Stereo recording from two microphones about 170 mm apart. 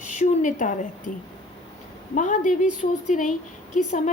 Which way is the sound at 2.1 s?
50° left (ahead or behind).